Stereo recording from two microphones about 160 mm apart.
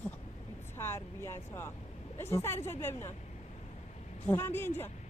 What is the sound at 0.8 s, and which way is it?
Speech, 15° left (ahead or behind).